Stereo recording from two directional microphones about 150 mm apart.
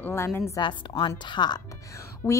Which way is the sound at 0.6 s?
30° left (ahead or behind).